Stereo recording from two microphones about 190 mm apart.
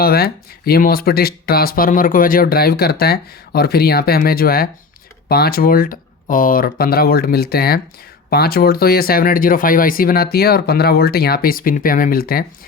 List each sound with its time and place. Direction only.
0.0 s speech: 55° left (ahead or behind)